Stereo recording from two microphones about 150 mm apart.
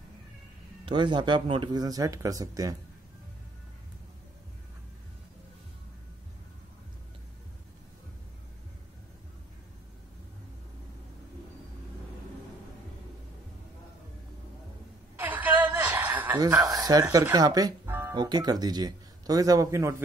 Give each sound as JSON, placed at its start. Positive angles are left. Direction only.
{"t": 0.8, "sound": "speech", "side_deg": -30}
{"t": 15.1, "sound": "a sound", "side_deg": -10}
{"t": 16.3, "sound": "a sound", "side_deg": -25}
{"t": 17.1, "sound": "speech", "side_deg": -25}
{"t": 17.8, "sound": "music", "side_deg": -15}
{"t": 18.1, "sound": "speech", "side_deg": -25}